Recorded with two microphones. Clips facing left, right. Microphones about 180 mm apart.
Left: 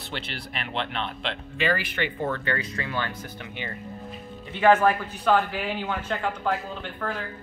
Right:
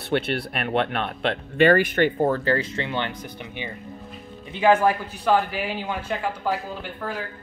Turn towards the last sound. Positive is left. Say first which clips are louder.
# right 1 dB
turn(degrees=-5)  # may be behind; listen again after turning